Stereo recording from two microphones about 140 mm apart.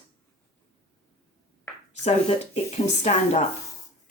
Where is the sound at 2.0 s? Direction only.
50° left (ahead or behind).